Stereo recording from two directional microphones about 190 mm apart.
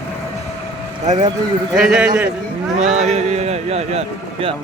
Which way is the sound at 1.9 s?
5° right (ahead or behind).